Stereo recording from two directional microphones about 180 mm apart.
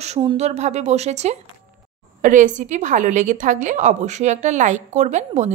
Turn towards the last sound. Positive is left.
turn(degrees=-40)  # may be behind; listen again after turning